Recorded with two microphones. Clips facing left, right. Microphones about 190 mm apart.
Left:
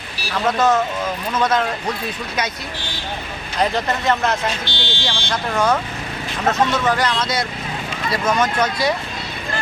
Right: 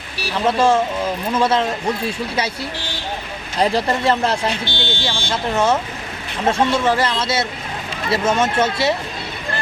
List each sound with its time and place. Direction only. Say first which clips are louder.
0.4 s speech: right 2 dB; 30° right (ahead or behind)
3.6 s speech: right 3 dB; 35° right (ahead or behind)
4.6 s speech: right 2 dB; 55° right (ahead or behind)
5.3 s speech: right 1 dB; 25° right (ahead or behind)